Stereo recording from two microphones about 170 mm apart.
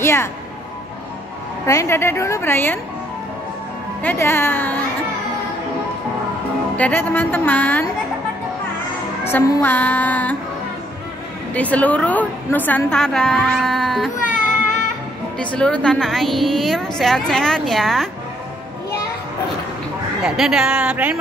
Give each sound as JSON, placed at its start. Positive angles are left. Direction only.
{"t": 0.0, "sound": "speech", "side_deg": 15}
{"t": 1.7, "sound": "a woman's voice", "side_deg": 15}
{"t": 4.0, "sound": "a woman's voice", "side_deg": 10}
{"t": 6.8, "sound": "a woman's voice", "side_deg": 10}
{"t": 9.2, "sound": "a woman's voice", "side_deg": 15}
{"t": 11.5, "sound": "a woman's voice", "side_deg": 10}
{"t": 15.3, "sound": "a woman's voice", "side_deg": 5}
{"t": 20.2, "sound": "a woman's voice", "side_deg": -5}